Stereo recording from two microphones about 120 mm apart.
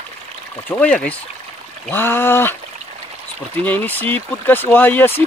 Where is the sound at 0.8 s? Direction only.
10° left (ahead or behind).